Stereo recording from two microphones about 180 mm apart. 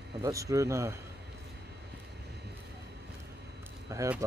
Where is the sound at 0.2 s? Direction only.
15° right (ahead or behind).